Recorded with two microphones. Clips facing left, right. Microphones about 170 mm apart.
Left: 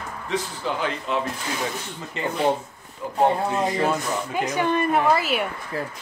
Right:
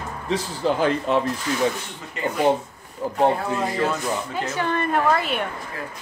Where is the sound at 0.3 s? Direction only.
40° right (ahead or behind).